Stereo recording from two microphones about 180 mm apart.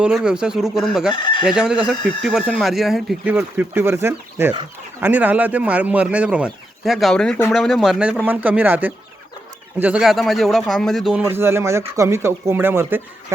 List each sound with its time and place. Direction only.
0.0 s speech: 5° right (ahead or behind)
1.1 s chicken: 25° left (ahead or behind)
1.5 s speech: 5° right (ahead or behind)